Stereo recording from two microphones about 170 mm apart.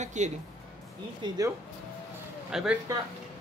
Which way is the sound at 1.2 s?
25° right (ahead or behind).